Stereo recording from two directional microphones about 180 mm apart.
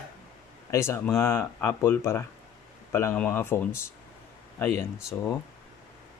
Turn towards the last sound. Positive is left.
turn(degrees=15)  # may be behind; listen again after turning